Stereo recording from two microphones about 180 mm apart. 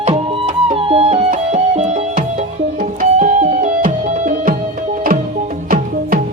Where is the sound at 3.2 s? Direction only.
45° right (ahead or behind).